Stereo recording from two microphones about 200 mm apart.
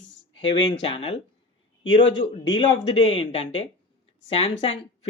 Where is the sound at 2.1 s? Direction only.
25° left (ahead or behind).